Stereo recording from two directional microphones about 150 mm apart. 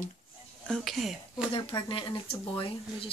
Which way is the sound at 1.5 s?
35° left (ahead or behind).